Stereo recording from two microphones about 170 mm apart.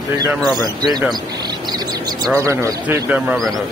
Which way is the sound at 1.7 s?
20° right (ahead or behind).